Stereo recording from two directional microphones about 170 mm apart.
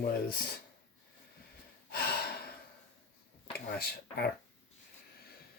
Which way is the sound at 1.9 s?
65° left (ahead or behind).